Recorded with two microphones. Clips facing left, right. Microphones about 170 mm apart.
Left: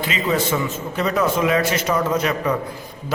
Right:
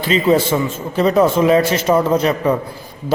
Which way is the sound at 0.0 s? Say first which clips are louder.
Right 7 dB; 30° right (ahead or behind).